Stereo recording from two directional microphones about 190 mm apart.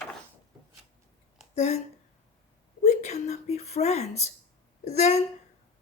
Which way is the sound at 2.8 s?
35° left (ahead or behind).